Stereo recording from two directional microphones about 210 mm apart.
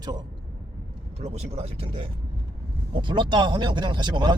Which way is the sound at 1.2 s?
30° right (ahead or behind).